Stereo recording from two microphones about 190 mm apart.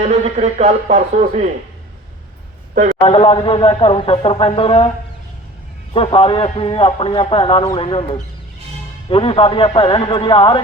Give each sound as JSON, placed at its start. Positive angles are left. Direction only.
{"t": 0.0, "sound": "speech", "side_deg": -35}
{"t": 3.0, "sound": "speech", "side_deg": 30}
{"t": 5.9, "sound": "speech", "side_deg": 30}